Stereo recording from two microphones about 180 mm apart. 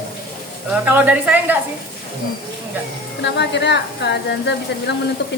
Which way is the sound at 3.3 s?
70° left (ahead or behind).